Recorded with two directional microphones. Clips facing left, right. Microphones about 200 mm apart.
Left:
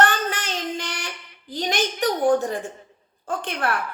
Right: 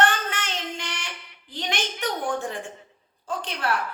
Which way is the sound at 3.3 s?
50° left (ahead or behind).